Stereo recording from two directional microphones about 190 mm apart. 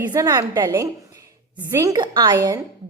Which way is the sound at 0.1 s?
20° right (ahead or behind).